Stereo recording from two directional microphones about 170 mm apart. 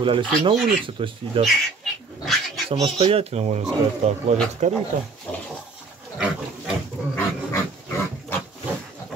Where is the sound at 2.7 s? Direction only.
35° right (ahead or behind).